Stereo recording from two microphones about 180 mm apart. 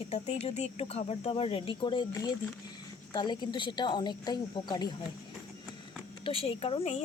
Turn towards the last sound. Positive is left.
turn(degrees=35)  # may be behind; listen again after turning